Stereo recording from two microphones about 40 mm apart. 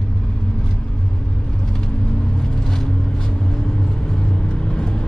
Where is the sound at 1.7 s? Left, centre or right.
Centre.